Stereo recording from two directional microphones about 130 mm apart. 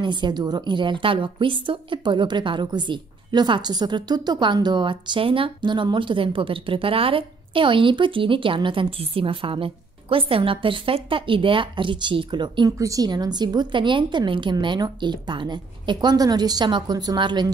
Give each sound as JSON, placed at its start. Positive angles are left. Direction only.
{"t": 0.0, "sound": "a woman's voice", "side_deg": -35}
{"t": 12.7, "sound": "a woman's voice", "side_deg": -25}